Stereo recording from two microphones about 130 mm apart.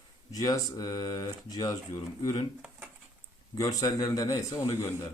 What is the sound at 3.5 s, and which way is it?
Speech, 30° left (ahead or behind).